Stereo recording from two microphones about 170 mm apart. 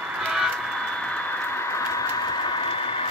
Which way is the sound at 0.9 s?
10° left (ahead or behind).